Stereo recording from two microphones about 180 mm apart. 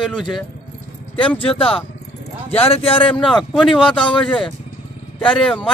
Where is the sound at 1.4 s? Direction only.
30° left (ahead or behind).